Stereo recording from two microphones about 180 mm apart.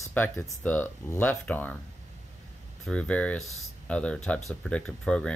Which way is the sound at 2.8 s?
5° left (ahead or behind).